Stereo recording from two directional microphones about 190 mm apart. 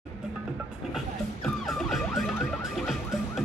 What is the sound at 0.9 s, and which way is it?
Music, centre (ahead or behind).